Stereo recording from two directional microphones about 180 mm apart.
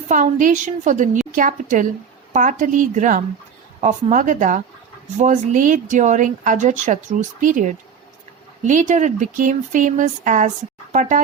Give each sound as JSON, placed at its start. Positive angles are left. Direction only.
{"t": 0.1, "sound": "speech", "side_deg": -45}